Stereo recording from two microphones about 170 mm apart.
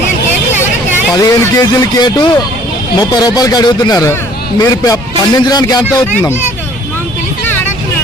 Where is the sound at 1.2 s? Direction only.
20° left (ahead or behind).